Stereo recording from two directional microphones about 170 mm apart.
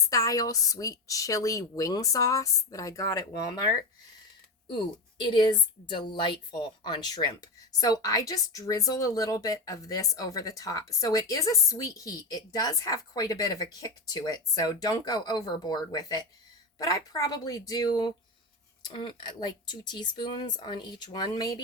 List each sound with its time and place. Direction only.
0.1 s speech: 20° left (ahead or behind)
4.7 s speech: 30° left (ahead or behind)